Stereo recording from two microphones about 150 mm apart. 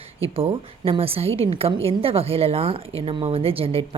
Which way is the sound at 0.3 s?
40° right (ahead or behind).